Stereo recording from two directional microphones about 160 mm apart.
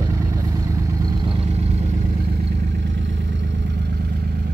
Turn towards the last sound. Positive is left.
turn(degrees=-90)